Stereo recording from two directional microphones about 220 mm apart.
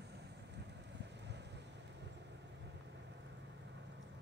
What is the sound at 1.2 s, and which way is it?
Vehicle, 50° right (ahead or behind).